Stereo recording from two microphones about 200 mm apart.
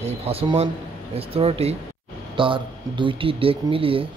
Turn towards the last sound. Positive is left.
turn(degrees=-25)  # may be behind; listen again after turning